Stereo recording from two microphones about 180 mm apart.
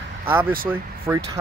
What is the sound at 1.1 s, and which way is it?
Speech, 10° right (ahead or behind).